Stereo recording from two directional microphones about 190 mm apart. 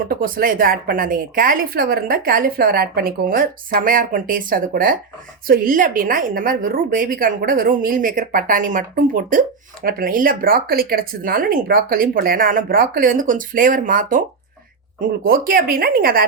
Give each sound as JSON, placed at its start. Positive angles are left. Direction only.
{"t": 0.1, "sound": "a woman's voice", "side_deg": -50}